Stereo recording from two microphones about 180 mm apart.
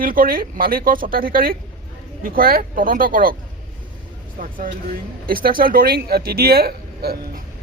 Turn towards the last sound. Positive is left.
turn(degrees=-60)  # may be behind; listen again after turning